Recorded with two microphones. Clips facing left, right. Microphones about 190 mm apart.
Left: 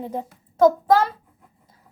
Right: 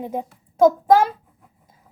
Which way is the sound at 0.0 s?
15° right (ahead or behind).